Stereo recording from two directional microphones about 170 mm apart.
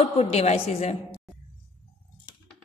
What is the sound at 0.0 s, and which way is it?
Speech, 35° left (ahead or behind).